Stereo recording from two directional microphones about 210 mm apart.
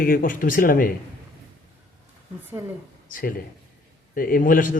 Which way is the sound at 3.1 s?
40° left (ahead or behind).